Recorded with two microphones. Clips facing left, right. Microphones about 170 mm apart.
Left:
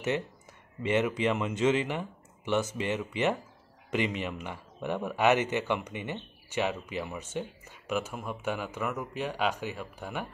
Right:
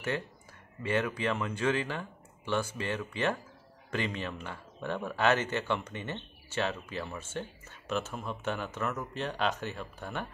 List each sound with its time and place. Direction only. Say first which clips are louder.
0.8 s speech: left 3 dB; 20° left (ahead or behind)